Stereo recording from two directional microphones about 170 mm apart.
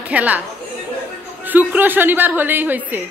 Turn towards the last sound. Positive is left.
turn(degrees=-10)  # may be behind; listen again after turning